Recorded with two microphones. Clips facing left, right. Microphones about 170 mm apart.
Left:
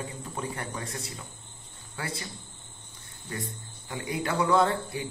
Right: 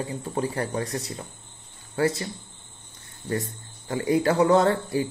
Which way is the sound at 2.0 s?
40° right (ahead or behind).